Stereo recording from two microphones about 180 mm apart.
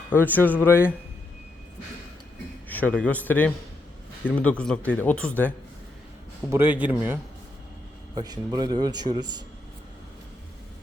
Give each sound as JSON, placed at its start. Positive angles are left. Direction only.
{"t": 0.1, "sound": "speech", "side_deg": 10}
{"t": 2.6, "sound": "speech", "side_deg": 10}
{"t": 6.5, "sound": "a man's voice", "side_deg": -10}
{"t": 8.1, "sound": "a man's voice", "side_deg": -20}